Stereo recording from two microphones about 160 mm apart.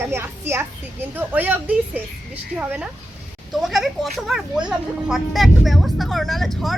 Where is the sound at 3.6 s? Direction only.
Centre (ahead or behind).